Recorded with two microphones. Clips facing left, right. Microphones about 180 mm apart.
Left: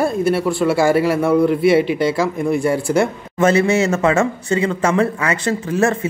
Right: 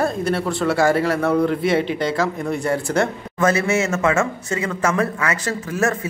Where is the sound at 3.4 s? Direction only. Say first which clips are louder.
Left 4 dB; 30° left (ahead or behind).